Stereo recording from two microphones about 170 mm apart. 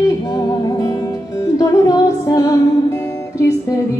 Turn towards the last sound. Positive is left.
turn(degrees=20)  # may be behind; listen again after turning